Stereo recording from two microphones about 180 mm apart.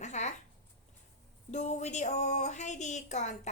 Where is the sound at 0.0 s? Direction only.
40° left (ahead or behind).